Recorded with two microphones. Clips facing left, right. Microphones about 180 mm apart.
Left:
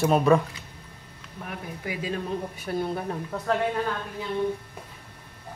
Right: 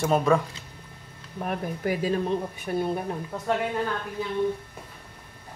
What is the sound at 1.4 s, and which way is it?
Speech, 45° right (ahead or behind).